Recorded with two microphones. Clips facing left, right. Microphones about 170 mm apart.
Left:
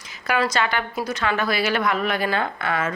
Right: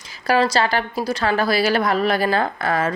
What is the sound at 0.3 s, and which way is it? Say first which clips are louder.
A woman's voice: right 4 dB; 30° right (ahead or behind).